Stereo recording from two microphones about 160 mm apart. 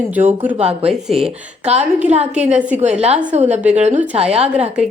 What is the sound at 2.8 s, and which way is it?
A woman's voice, 45° right (ahead or behind).